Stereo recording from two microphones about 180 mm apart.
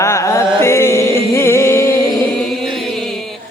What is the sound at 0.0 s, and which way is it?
Mantra, 15° left (ahead or behind).